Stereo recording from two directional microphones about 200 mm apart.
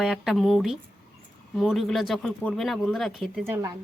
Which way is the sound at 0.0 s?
Centre (ahead or behind).